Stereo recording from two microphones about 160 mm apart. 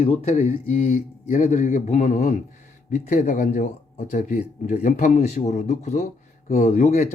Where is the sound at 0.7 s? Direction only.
55° left (ahead or behind).